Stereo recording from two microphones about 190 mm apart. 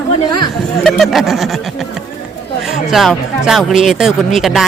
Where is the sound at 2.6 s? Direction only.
Centre (ahead or behind).